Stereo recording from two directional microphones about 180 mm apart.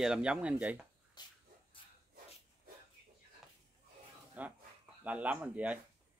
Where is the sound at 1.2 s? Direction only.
25° left (ahead or behind).